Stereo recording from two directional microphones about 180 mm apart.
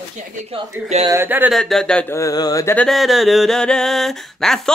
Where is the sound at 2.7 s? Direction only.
5° left (ahead or behind).